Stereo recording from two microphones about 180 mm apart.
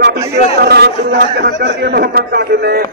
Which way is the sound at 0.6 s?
60° right (ahead or behind).